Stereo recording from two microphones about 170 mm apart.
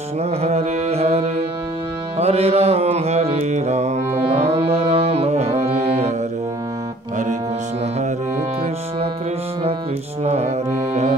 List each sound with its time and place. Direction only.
0.2 s mantra: 40° right (ahead or behind)
10.2 s music: 40° right (ahead or behind)